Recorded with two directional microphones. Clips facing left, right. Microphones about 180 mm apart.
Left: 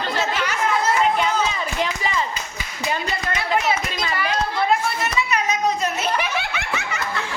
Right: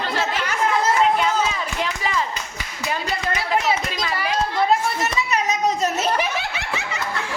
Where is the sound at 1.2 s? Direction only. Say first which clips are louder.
Even; centre (ahead or behind).